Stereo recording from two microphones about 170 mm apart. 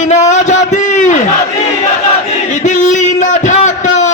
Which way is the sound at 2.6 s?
45° left (ahead or behind).